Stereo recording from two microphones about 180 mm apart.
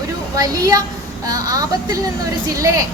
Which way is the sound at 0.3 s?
20° right (ahead or behind).